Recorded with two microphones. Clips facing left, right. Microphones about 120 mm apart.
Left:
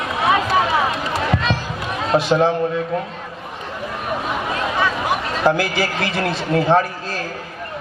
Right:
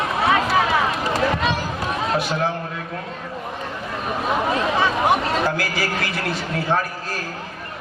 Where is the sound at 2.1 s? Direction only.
25° left (ahead or behind).